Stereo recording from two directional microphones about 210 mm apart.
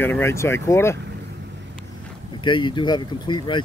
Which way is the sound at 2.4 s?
20° left (ahead or behind).